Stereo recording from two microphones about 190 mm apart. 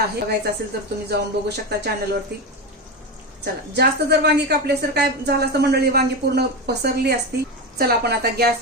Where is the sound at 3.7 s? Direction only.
60° right (ahead or behind).